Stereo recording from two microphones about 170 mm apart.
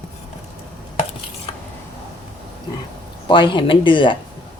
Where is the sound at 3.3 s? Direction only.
30° left (ahead or behind).